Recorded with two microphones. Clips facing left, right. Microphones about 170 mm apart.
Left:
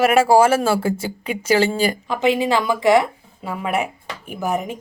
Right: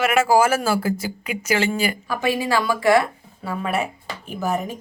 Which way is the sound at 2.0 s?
20° left (ahead or behind).